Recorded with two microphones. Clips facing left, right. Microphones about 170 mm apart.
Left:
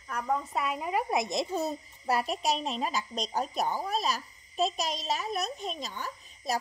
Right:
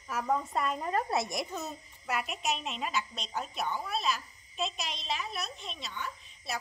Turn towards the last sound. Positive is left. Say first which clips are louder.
# left 6 dB
turn(degrees=40)  # may be behind; listen again after turning